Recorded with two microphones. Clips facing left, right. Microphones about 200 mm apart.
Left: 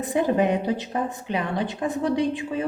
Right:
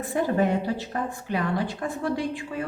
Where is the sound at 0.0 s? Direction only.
20° left (ahead or behind).